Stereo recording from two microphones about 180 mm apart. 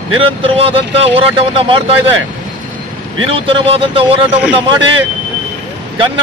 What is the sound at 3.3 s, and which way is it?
A man's voice, 30° right (ahead or behind).